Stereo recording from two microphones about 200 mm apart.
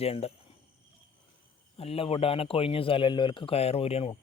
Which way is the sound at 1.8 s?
30° left (ahead or behind).